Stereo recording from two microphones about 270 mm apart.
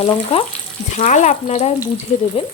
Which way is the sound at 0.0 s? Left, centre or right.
Left.